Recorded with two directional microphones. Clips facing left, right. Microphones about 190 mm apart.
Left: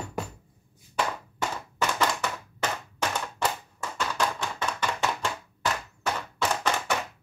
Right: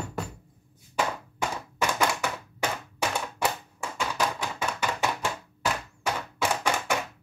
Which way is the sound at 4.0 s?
10° right (ahead or behind).